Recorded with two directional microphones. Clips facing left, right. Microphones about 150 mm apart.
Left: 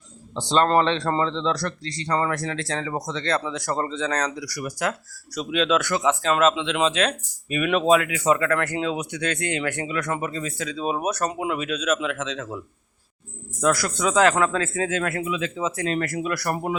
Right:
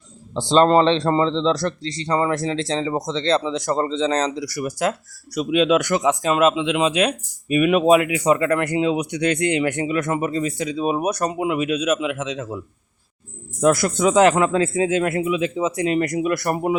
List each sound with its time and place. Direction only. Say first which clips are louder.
0.3 s speech: right 5 dB; 25° right (ahead or behind)
5.3 s speech: right 5 dB; 10° right (ahead or behind)
13.6 s speech: right 5 dB; 25° right (ahead or behind)